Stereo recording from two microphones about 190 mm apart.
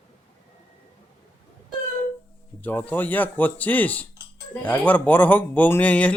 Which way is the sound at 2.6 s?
10° left (ahead or behind).